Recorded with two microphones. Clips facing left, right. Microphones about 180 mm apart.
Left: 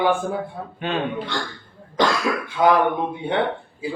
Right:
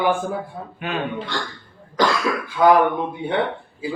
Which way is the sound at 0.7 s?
30° left (ahead or behind).